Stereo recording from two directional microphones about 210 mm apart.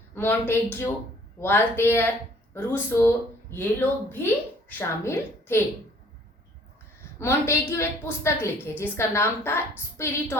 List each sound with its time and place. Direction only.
0.1 s a woman's voice: 10° left (ahead or behind)
7.2 s a woman's voice: 10° left (ahead or behind)